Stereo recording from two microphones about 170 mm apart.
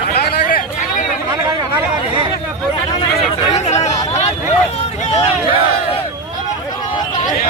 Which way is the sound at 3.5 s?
40° left (ahead or behind).